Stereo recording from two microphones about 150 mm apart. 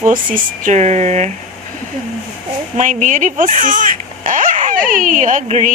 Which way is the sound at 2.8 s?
60° right (ahead or behind).